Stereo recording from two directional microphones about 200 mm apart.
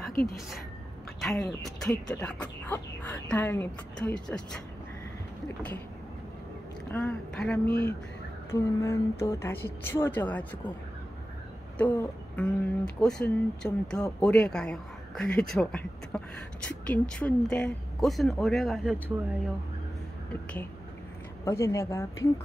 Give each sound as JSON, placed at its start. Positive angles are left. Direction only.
{"t": 1.2, "sound": "speech", "side_deg": 0}
{"t": 6.9, "sound": "a woman's voice", "side_deg": 10}
{"t": 11.8, "sound": "speech", "side_deg": 5}
{"t": 21.5, "sound": "a woman's voice", "side_deg": 15}